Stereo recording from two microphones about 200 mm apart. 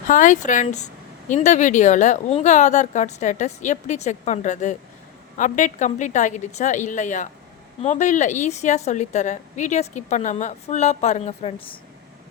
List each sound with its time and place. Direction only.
0.1 s a woman's voice: 40° left (ahead or behind)